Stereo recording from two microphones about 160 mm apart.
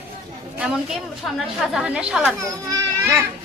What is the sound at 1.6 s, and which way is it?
Speech, 5° right (ahead or behind).